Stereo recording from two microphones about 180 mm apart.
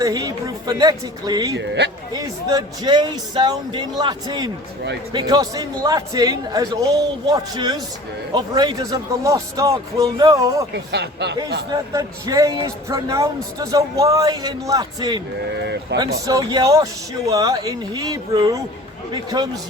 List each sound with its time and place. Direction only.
0.0 s a man's voice: 20° right (ahead or behind)
1.5 s speech: 75° right (ahead or behind)
2.1 s a man's voice: 20° right (ahead or behind)
10.9 s speech: 70° right (ahead or behind)
11.9 s a man's voice: 20° right (ahead or behind)
15.5 s speech: 70° right (ahead or behind)
16.2 s a man's voice: 20° right (ahead or behind)